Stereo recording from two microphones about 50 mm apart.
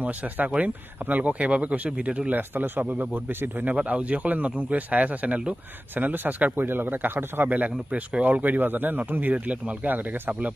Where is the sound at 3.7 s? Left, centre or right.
Right.